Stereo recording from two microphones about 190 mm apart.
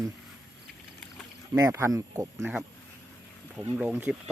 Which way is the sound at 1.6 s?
15° right (ahead or behind).